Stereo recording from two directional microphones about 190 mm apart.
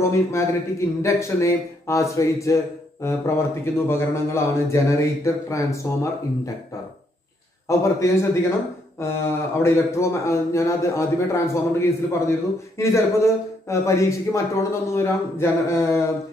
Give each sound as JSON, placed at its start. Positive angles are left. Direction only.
{"t": 0.1, "sound": "speech", "side_deg": 15}
{"t": 7.6, "sound": "speech", "side_deg": 15}